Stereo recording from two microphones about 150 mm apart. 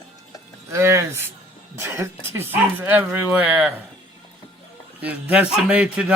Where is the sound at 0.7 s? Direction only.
20° right (ahead or behind).